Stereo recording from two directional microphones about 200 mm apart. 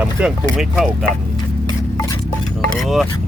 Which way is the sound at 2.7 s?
Centre (ahead or behind).